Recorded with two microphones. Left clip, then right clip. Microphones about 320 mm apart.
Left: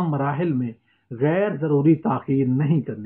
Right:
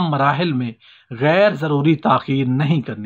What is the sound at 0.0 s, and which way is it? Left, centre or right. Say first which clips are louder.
Speech: right 7 dB; right.